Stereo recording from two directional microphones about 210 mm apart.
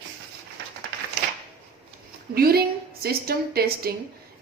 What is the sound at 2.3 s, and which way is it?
A woman's voice, 45° right (ahead or behind).